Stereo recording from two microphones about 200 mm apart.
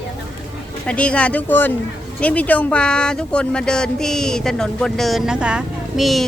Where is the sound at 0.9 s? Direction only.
5° left (ahead or behind).